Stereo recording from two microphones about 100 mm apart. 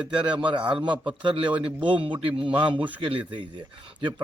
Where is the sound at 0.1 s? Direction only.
50° right (ahead or behind).